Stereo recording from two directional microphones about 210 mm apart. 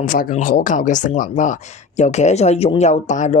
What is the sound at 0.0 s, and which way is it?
Speech, 40° left (ahead or behind).